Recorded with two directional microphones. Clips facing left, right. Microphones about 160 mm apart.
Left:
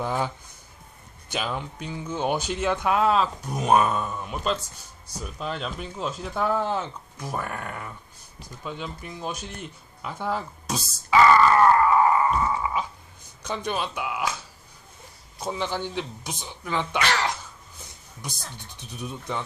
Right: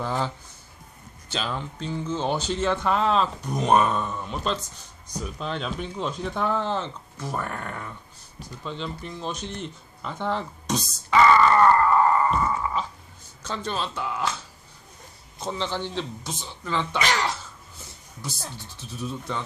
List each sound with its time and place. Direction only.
0.0 s speech: 15° left (ahead or behind)
1.3 s speech: 15° left (ahead or behind)
15.4 s speech: 10° left (ahead or behind)
18.6 s speech: 15° left (ahead or behind)